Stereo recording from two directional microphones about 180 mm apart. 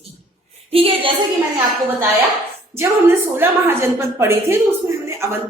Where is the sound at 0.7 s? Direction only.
30° right (ahead or behind).